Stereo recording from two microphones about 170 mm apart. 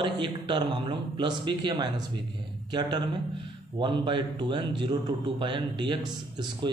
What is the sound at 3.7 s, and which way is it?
A man's voice, 25° right (ahead or behind).